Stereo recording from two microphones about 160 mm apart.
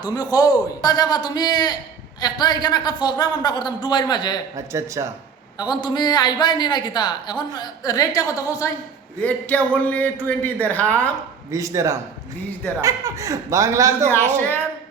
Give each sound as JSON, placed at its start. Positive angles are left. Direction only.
{"t": 0.0, "sound": "a woman's voice", "side_deg": 25}
{"t": 4.5, "sound": "speech", "side_deg": -20}
{"t": 5.5, "sound": "a woman's voice", "side_deg": 25}
{"t": 11.5, "sound": "speech", "side_deg": -20}
{"t": 14.1, "sound": "a man's voice", "side_deg": 10}